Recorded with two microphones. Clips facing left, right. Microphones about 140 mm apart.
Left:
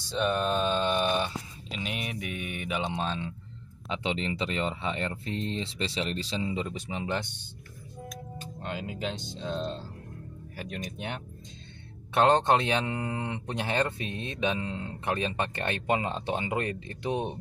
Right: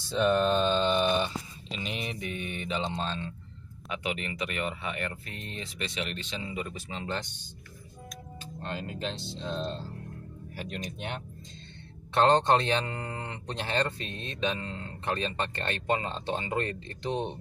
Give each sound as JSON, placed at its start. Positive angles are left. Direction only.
{"t": 0.0, "sound": "speech", "side_deg": 0}
{"t": 3.9, "sound": "speech", "side_deg": 25}
{"t": 8.6, "sound": "speech", "side_deg": 10}